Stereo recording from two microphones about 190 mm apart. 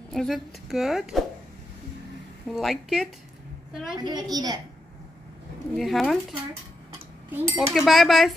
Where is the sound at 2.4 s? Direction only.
Centre (ahead or behind).